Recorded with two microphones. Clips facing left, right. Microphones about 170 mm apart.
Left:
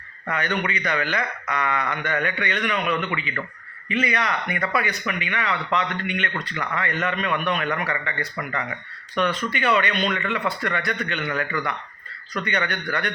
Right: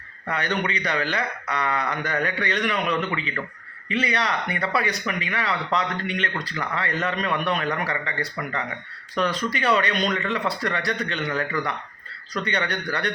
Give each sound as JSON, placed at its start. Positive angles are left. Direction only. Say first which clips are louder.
{"t": 0.3, "sound": "speech", "louder": "even", "side_deg": -35}